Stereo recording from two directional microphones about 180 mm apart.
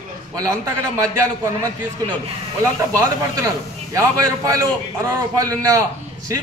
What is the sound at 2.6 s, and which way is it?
A man's voice, 15° right (ahead or behind).